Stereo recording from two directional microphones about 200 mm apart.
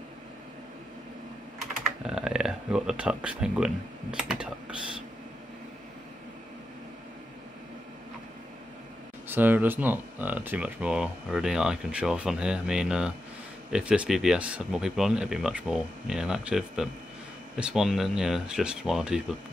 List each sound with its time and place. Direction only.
2.0 s speech: 5° right (ahead or behind)
9.3 s speech: 10° right (ahead or behind)